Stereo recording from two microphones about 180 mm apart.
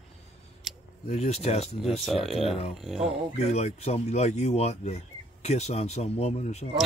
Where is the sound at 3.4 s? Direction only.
35° left (ahead or behind).